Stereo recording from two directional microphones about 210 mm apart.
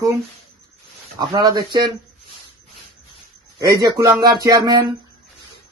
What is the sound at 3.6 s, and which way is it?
A man's voice, 20° right (ahead or behind).